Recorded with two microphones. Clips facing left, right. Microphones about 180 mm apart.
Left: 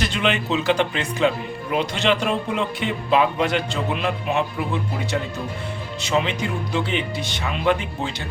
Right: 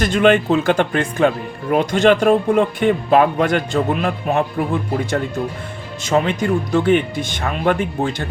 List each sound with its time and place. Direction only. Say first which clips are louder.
0.0 s speech: right 9 dB; 50° right (ahead or behind)